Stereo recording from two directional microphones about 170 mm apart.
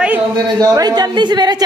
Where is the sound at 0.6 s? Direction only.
25° right (ahead or behind).